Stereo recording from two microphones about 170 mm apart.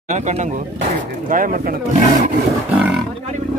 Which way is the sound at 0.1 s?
45° right (ahead or behind).